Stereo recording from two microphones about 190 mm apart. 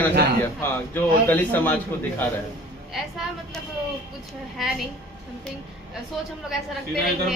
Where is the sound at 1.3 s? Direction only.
10° left (ahead or behind).